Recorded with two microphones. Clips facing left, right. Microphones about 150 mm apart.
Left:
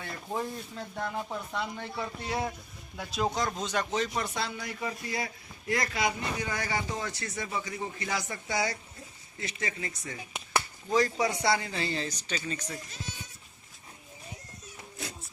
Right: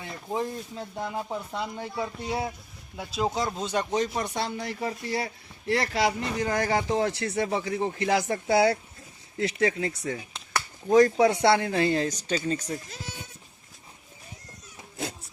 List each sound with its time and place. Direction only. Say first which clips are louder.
0.3 s speech: right 4 dB; 15° right (ahead or behind)
4.1 s speech: right 3 dB; 25° right (ahead or behind); by 10.2 s 70° right (ahead or behind)
10.8 s speech: right 9 dB; 50° right (ahead or behind)